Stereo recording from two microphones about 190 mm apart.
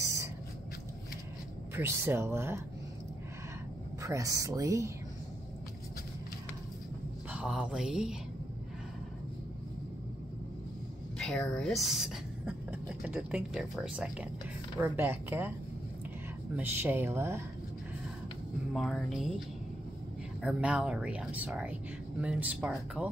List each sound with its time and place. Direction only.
0.0 s a sound: 15° right (ahead or behind)
1.8 s speech: 10° right (ahead or behind)
4.0 s speech: 15° right (ahead or behind)
7.2 s speech: 5° right (ahead or behind)
11.1 s speech: 5° left (ahead or behind)
16.5 s speech: 10° right (ahead or behind)
18.7 s speech: centre (ahead or behind)
20.4 s speech: 5° right (ahead or behind)